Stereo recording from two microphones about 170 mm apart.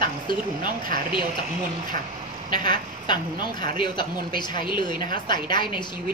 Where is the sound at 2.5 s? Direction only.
25° left (ahead or behind).